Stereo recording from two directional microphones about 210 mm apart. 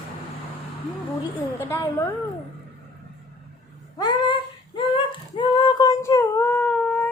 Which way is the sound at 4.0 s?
20° left (ahead or behind).